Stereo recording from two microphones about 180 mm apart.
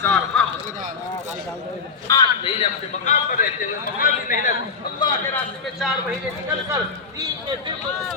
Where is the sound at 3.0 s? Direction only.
50° left (ahead or behind).